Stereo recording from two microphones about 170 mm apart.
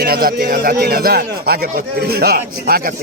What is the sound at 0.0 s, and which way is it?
Speech, 60° right (ahead or behind).